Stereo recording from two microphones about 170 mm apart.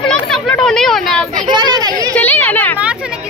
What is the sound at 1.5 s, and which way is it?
Speech, 25° right (ahead or behind).